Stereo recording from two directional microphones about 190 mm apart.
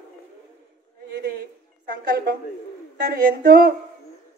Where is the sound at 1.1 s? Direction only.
50° right (ahead or behind).